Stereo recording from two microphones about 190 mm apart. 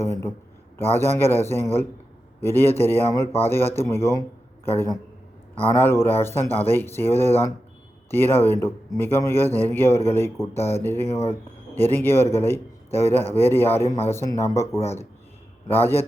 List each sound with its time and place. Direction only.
0.0 s speech: 15° left (ahead or behind)
5.7 s speech: 10° left (ahead or behind)